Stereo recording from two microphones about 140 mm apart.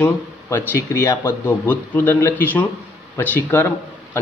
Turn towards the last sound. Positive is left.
turn(degrees=15)  # may be behind; listen again after turning